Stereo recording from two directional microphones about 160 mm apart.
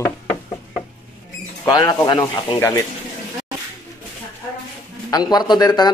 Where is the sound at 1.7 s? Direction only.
25° left (ahead or behind).